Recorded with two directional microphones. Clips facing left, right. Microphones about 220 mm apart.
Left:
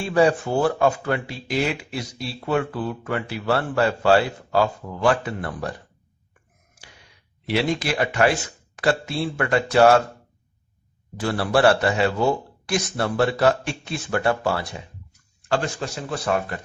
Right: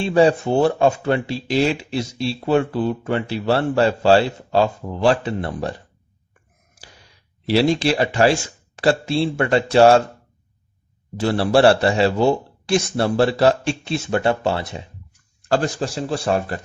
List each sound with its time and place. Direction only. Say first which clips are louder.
0.0 s speech: right 3 dB; 25° right (ahead or behind)
7.4 s speech: right 6 dB; 30° right (ahead or behind)
11.2 s speech: right 4 dB; 25° right (ahead or behind)
15.4 s a man's voice: right 4 dB; 40° right (ahead or behind)